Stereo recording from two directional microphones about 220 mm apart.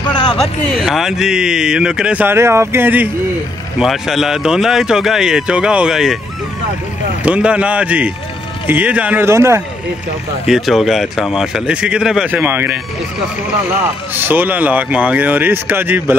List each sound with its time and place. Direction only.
0.0 s a sound: 20° left (ahead or behind)
0.3 s speech: centre (ahead or behind)
7.2 s speech: 5° right (ahead or behind)
10.4 s speech: centre (ahead or behind)
14.1 s speech: 10° right (ahead or behind)